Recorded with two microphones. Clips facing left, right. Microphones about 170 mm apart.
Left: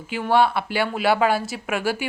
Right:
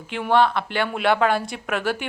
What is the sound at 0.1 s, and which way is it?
A woman's voice, 5° left (ahead or behind).